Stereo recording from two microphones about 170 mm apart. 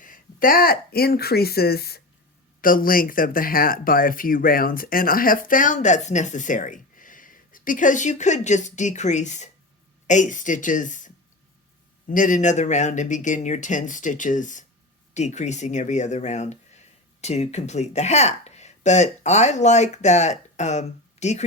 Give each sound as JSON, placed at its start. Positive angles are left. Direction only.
{"t": 0.0, "sound": "speech", "side_deg": 55}
{"t": 2.6, "sound": "speech", "side_deg": 55}